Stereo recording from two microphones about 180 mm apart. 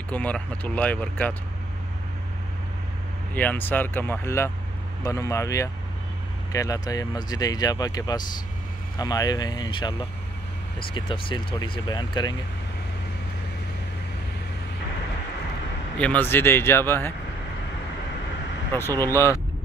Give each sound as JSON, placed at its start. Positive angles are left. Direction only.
{"t": 0.1, "sound": "speech", "side_deg": 10}
{"t": 3.3, "sound": "speech", "side_deg": 10}
{"t": 16.0, "sound": "speech", "side_deg": 10}
{"t": 18.7, "sound": "speech", "side_deg": 15}